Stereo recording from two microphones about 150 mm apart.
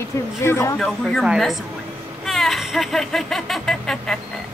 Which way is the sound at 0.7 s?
5° left (ahead or behind).